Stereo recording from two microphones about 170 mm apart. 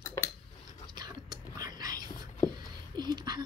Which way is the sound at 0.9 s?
25° right (ahead or behind).